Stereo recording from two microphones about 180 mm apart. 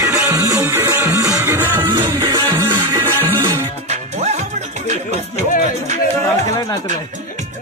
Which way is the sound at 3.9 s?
40° right (ahead or behind).